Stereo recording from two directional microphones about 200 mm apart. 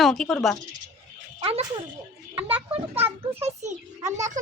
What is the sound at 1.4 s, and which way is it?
Speech, 30° right (ahead or behind).